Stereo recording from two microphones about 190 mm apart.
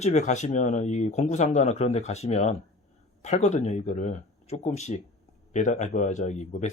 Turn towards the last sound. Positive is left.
turn(degrees=40)  # may be behind; listen again after turning